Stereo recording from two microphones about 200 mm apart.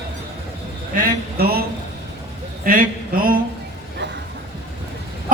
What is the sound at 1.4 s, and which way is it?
Speech, 50° right (ahead or behind).